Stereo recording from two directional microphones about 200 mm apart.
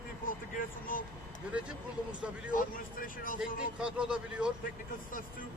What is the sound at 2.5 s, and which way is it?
Speech, 45° left (ahead or behind).